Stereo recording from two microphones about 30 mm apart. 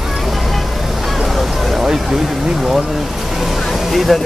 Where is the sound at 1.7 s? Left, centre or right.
Centre.